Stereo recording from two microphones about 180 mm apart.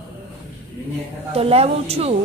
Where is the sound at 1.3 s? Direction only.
35° right (ahead or behind).